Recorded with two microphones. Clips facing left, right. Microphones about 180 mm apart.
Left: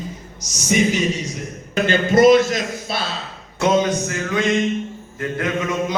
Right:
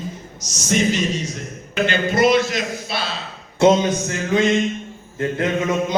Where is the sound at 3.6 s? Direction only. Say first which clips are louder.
Right 3 dB; 30° right (ahead or behind).